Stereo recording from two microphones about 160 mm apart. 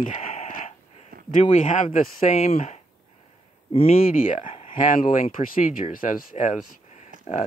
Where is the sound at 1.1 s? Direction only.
70° right (ahead or behind).